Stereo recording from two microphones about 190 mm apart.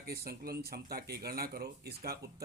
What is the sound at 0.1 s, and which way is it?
A man's voice, 55° right (ahead or behind).